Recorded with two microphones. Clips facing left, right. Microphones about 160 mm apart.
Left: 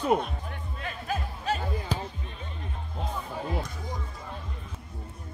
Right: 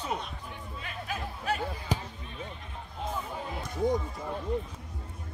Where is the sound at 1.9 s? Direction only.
15° right (ahead or behind).